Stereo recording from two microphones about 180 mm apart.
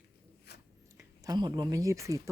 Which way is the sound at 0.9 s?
20° right (ahead or behind).